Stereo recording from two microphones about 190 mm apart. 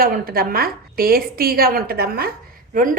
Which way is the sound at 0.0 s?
50° right (ahead or behind).